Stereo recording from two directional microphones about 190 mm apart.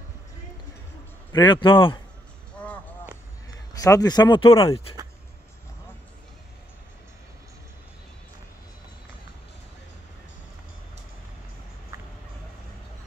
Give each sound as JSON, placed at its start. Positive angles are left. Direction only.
{"t": 1.3, "sound": "speech", "side_deg": 25}
{"t": 2.6, "sound": "a sound", "side_deg": 5}
{"t": 3.7, "sound": "speech", "side_deg": 20}
{"t": 11.9, "sound": "fowl", "side_deg": -15}